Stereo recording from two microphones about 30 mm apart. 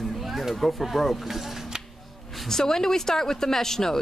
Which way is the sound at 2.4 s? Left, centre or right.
Centre.